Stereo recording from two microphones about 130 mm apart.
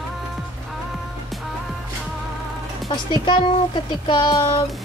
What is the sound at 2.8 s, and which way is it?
Speech, 35° left (ahead or behind).